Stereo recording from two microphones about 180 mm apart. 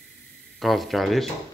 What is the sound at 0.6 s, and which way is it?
Speech, centre (ahead or behind).